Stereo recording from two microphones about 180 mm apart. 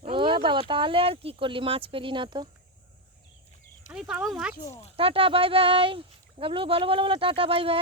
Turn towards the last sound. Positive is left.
turn(degrees=-30)  # may be behind; listen again after turning